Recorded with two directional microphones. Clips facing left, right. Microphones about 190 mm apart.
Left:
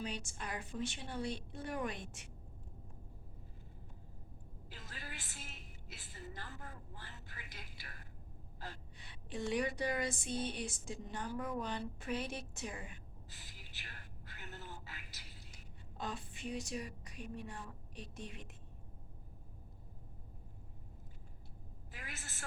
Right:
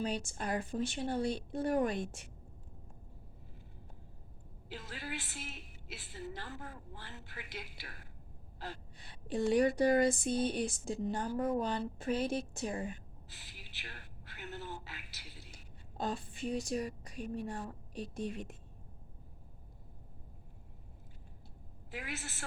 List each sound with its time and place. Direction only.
0.0 s speech: 35° right (ahead or behind)
4.7 s a woman's voice: 75° right (ahead or behind)
9.0 s speech: 35° right (ahead or behind)
13.3 s a sound: 80° right
16.0 s a woman's voice: 30° right (ahead or behind)
21.9 s a woman's voice: 75° right (ahead or behind)